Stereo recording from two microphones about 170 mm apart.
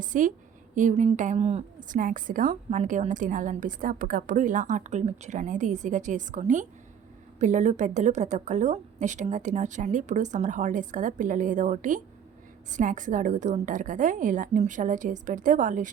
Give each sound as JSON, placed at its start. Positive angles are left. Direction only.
{"t": 0.0, "sound": "a woman's voice", "side_deg": -50}
{"t": 2.0, "sound": "a woman's voice", "side_deg": -50}